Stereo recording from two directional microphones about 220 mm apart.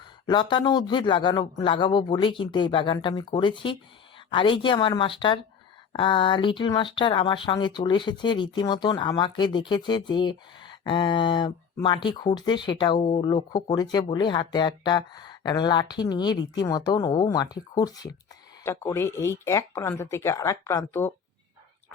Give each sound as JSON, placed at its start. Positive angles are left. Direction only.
{"t": 0.3, "sound": "speech", "side_deg": 20}